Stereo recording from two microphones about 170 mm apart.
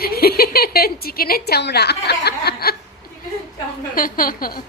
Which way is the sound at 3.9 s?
55° left (ahead or behind).